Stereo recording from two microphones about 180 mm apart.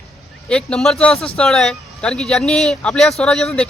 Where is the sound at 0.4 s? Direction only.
5° left (ahead or behind).